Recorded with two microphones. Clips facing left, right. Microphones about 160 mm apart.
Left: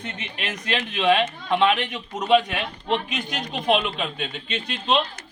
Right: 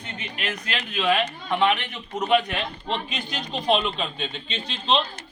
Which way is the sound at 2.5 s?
15° left (ahead or behind).